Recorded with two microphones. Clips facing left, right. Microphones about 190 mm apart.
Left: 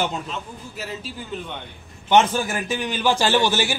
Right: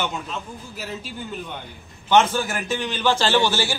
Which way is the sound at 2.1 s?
15° left (ahead or behind).